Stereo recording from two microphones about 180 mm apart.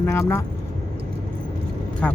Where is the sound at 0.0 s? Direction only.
15° left (ahead or behind).